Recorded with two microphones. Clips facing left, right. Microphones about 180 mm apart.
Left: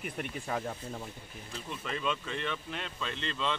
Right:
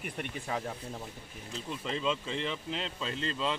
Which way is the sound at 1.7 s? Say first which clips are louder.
Right 2 dB; 25° right (ahead or behind).